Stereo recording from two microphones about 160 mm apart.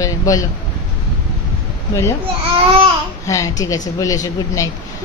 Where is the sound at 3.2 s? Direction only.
20° left (ahead or behind).